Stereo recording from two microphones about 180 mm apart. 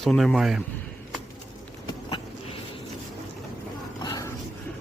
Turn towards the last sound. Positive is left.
turn(degrees=20)  # may be behind; listen again after turning